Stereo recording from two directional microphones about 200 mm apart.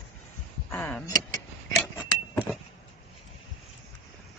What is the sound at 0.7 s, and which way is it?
Speech, 5° left (ahead or behind).